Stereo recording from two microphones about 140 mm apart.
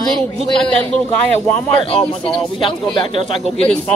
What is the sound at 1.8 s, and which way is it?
A woman's voice, 40° left (ahead or behind).